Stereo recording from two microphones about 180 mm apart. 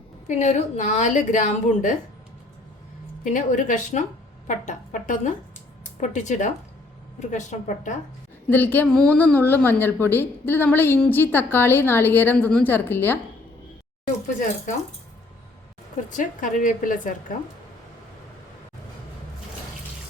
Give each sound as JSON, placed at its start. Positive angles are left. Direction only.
{"t": 0.3, "sound": "a woman's voice", "side_deg": 40}
{"t": 3.2, "sound": "a woman's voice", "side_deg": 45}
{"t": 8.4, "sound": "a woman's voice", "side_deg": 10}
{"t": 16.0, "sound": "a woman's voice", "side_deg": 45}